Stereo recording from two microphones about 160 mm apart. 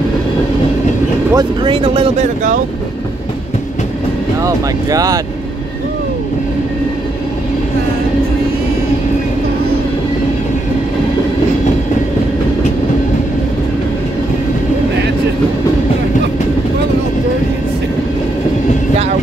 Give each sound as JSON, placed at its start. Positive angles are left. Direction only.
{"t": 1.3, "sound": "speech", "side_deg": -30}
{"t": 4.4, "sound": "speech", "side_deg": -20}